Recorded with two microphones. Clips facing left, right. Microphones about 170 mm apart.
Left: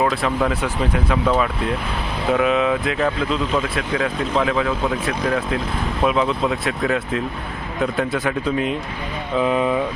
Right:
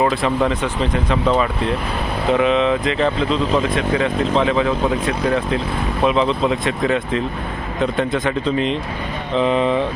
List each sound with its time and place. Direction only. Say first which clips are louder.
0.0 s speech: right 2 dB; centre (ahead or behind)